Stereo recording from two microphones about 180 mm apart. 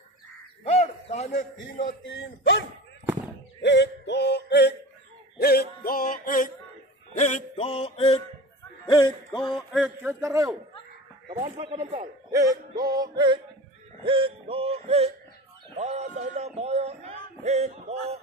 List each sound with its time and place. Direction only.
0.7 s bird: 35° left (ahead or behind)
2.0 s speech: 90° left
3.6 s music: 75° left (ahead or behind)
5.4 s music: 60° left (ahead or behind); by 8.2 s 30° left (ahead or behind)
8.8 s speech: 25° left (ahead or behind)
9.7 s a man's voice: 5° right (ahead or behind)
11.8 s a man's voice: 45° right (ahead or behind)
12.3 s music: 20° right (ahead or behind)
14.0 s a man's voice: 30° right (ahead or behind)